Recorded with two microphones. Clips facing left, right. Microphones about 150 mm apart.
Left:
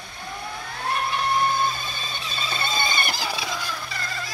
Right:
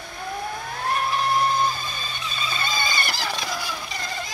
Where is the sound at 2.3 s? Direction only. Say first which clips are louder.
Left 1 dB; 30° left (ahead or behind).